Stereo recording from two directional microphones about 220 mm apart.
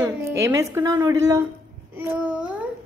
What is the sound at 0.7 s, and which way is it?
A child's voice, 10° right (ahead or behind).